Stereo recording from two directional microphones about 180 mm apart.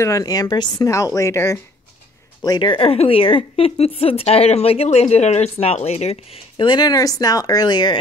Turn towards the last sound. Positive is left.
turn(degrees=25)  # may be behind; listen again after turning